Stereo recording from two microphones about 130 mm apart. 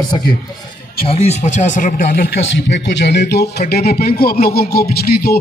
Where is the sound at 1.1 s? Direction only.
55° left (ahead or behind); by 2.0 s 85° left.